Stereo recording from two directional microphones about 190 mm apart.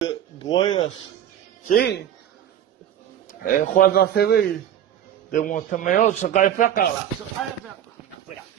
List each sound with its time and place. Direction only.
0.0 s a sound: 25° left (ahead or behind)
1.7 s speech: 55° left (ahead or behind)
3.3 s a man's voice: 45° left (ahead or behind)
5.3 s a man's voice: 45° left (ahead or behind)